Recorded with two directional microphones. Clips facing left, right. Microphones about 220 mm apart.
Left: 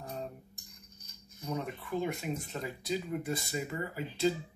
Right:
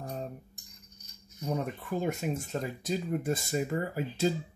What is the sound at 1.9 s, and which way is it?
Speech, 45° right (ahead or behind).